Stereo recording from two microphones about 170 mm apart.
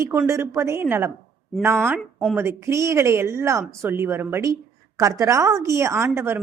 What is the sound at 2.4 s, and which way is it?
Speech, 15° right (ahead or behind).